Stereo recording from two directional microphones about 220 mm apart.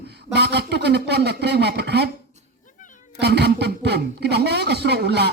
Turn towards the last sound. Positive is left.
turn(degrees=-50)  # may be behind; listen again after turning